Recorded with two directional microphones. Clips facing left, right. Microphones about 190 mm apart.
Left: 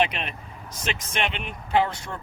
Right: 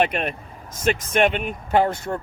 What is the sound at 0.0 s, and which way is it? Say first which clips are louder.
Speech: right 4 dB; 50° right (ahead or behind).